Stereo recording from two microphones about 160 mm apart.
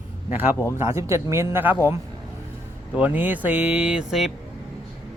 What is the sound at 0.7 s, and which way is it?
Speech, 15° right (ahead or behind).